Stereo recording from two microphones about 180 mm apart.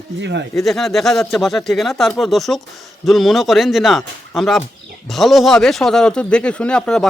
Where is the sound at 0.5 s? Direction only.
Centre (ahead or behind).